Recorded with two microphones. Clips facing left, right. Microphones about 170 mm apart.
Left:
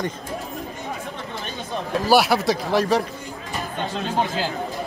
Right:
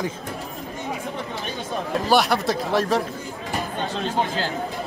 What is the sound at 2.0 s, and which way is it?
Speech, 5° left (ahead or behind).